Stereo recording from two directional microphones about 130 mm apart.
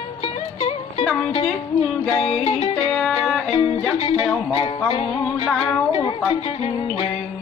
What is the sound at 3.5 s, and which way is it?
Music, 45° left (ahead or behind).